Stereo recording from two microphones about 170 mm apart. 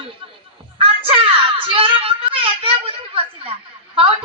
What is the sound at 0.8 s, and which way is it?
Child singing, 30° right (ahead or behind).